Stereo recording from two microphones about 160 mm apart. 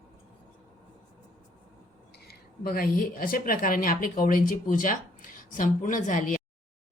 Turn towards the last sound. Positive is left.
turn(degrees=55)  # may be behind; listen again after turning